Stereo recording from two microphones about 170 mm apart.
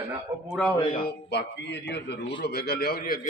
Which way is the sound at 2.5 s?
65° left (ahead or behind).